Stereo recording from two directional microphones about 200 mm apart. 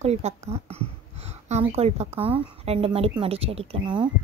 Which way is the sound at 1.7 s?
30° right (ahead or behind).